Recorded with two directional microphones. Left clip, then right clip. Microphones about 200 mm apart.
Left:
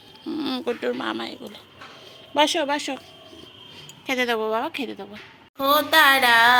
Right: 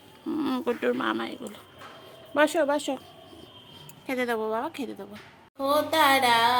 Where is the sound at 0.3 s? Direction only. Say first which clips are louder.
Left 1 dB; 15° right (ahead or behind).